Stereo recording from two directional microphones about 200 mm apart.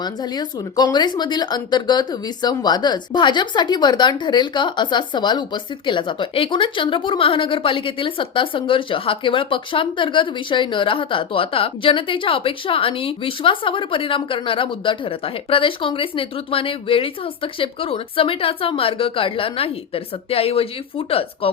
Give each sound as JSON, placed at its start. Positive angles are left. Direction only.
{"t": 0.0, "sound": "speech", "side_deg": 20}